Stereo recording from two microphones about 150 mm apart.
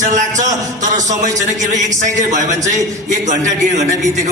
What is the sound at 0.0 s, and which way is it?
A man's voice, 55° right (ahead or behind).